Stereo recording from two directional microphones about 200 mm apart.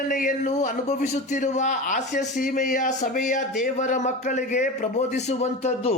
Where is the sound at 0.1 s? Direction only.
40° left (ahead or behind).